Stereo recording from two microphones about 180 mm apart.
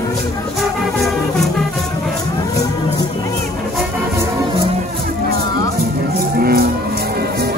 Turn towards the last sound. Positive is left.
turn(degrees=-60)  # may be behind; listen again after turning